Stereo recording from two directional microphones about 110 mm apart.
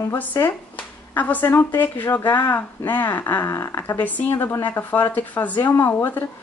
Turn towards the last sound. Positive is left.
turn(degrees=20)  # may be behind; listen again after turning